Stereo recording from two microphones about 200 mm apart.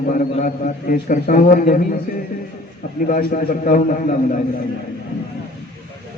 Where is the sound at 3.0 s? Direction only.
40° left (ahead or behind).